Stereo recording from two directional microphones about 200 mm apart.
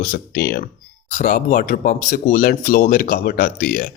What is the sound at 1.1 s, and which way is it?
A man's voice, 40° left (ahead or behind).